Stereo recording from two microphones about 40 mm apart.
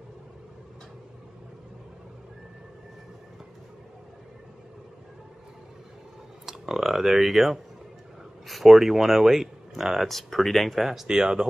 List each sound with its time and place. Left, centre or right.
6.4 s speech: centre
10.0 s speech: centre
11.1 s speech: centre